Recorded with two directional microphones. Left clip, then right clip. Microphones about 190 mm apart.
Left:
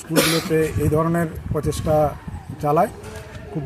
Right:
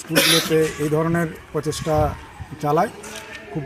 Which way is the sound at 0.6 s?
25° left (ahead or behind).